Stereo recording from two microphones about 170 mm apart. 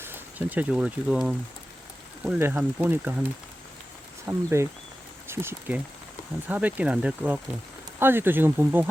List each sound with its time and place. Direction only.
0.0 s speech: 10° right (ahead or behind)
4.3 s speech: 15° right (ahead or behind)